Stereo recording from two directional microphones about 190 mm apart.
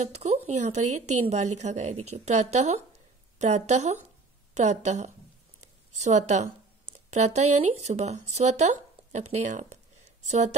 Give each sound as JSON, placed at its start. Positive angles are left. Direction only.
{"t": 0.0, "sound": "a woman's voice", "side_deg": -35}